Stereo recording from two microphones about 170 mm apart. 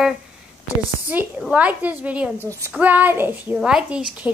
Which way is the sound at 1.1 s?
10° right (ahead or behind).